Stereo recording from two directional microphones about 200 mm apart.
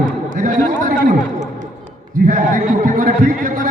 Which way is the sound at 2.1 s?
40° right (ahead or behind).